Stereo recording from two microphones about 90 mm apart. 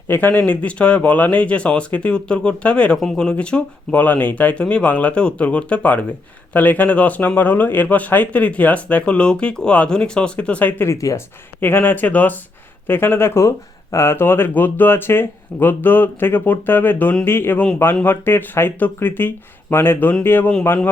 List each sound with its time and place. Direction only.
0.1 s speech: 20° left (ahead or behind)
10.8 s speech: 35° left (ahead or behind)
11.6 s speech: 25° left (ahead or behind)